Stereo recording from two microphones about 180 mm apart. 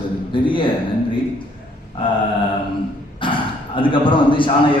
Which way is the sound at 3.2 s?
30° left (ahead or behind).